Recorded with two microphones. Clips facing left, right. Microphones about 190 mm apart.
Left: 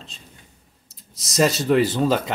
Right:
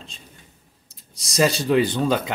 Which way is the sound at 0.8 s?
Centre (ahead or behind).